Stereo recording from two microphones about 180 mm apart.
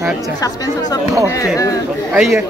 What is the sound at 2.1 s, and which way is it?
Speech, centre (ahead or behind).